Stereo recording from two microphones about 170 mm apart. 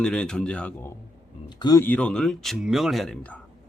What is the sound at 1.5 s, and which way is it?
Speech, 25° left (ahead or behind).